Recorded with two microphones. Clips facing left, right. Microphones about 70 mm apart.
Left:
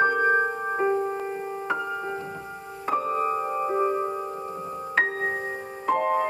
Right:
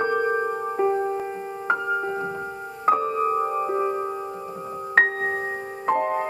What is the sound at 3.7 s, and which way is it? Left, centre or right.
Music, centre.